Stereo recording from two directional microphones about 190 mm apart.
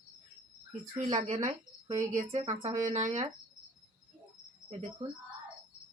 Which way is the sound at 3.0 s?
20° right (ahead or behind).